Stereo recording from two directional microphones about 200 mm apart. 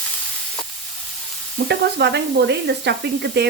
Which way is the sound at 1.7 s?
55° right (ahead or behind).